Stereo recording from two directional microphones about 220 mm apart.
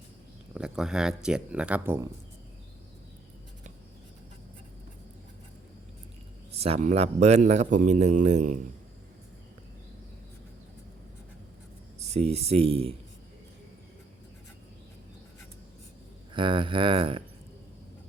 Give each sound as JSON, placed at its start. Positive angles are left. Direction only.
{"t": 0.5, "sound": "speech", "side_deg": -5}
{"t": 6.5, "sound": "a man's voice", "side_deg": -30}
{"t": 11.9, "sound": "speech", "side_deg": -30}
{"t": 16.3, "sound": "speech", "side_deg": -20}